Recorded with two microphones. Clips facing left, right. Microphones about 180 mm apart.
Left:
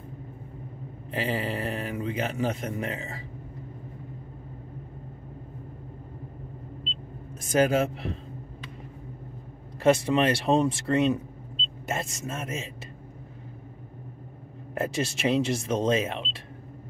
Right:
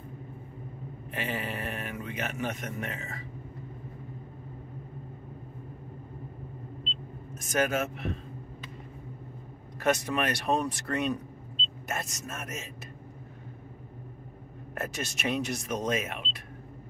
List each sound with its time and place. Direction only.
1.1 s a man's voice: 30° left (ahead or behind)
7.3 s a man's voice: 30° left (ahead or behind)
9.8 s speech: 30° left (ahead or behind)
14.8 s speech: 30° left (ahead or behind)